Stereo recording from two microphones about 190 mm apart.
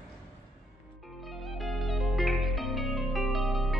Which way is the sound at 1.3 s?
Centre (ahead or behind).